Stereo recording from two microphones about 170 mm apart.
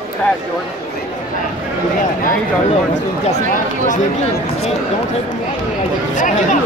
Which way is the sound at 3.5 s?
45° left (ahead or behind).